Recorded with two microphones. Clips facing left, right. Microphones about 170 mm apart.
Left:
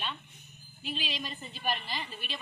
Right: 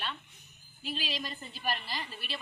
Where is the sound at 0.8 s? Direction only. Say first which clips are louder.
Even; 40° right (ahead or behind).